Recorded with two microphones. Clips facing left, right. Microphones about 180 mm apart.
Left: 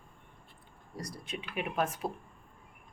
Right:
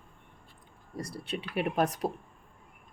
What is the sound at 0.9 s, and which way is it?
Speech, 30° right (ahead or behind).